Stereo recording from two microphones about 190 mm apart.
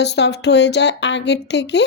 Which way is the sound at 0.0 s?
65° left (ahead or behind).